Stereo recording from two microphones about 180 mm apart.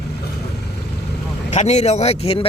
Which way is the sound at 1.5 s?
40° left (ahead or behind).